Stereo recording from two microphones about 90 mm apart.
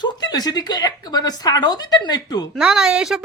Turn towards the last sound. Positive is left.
turn(degrees=-5)  # may be behind; listen again after turning